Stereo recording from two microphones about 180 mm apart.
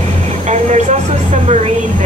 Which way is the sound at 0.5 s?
40° right (ahead or behind).